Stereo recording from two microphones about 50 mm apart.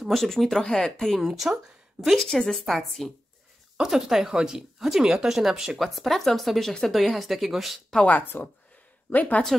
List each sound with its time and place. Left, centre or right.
0.0 s speech: centre
1.2 s speech: centre
8.1 s speech: left